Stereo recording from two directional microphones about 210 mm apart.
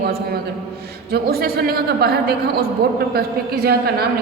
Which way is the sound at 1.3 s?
50° right (ahead or behind).